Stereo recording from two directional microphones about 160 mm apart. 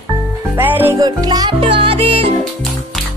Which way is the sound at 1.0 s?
25° right (ahead or behind).